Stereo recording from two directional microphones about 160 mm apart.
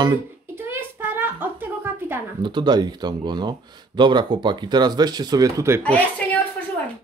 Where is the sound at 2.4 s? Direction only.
30° right (ahead or behind).